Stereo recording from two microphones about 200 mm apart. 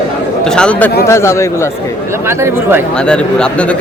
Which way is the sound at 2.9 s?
5° left (ahead or behind).